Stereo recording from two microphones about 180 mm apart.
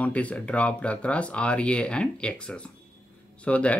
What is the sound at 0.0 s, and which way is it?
Speech, 10° left (ahead or behind).